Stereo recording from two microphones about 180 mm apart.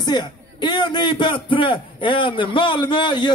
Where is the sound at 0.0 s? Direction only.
25° left (ahead or behind).